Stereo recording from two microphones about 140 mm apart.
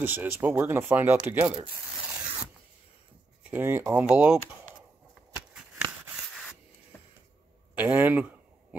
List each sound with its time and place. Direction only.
0.0 s speech: 15° right (ahead or behind)
3.4 s speech: 15° right (ahead or behind)
4.1 s speech: 5° right (ahead or behind)
7.7 s speech: 10° right (ahead or behind)